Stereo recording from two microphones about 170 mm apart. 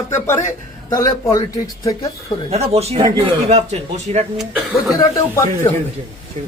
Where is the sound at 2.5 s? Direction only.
40° right (ahead or behind).